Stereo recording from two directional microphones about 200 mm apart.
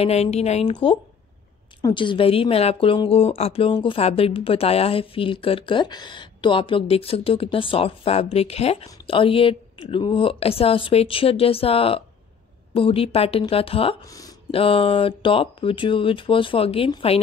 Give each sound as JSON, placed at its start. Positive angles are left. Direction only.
{"t": 0.0, "sound": "a woman's voice", "side_deg": 30}
{"t": 14.0, "sound": "speech", "side_deg": 15}
{"t": 14.5, "sound": "speech", "side_deg": 30}